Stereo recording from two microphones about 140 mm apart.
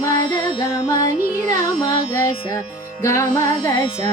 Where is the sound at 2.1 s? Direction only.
20° left (ahead or behind).